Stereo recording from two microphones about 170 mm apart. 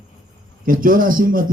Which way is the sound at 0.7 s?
55° right (ahead or behind).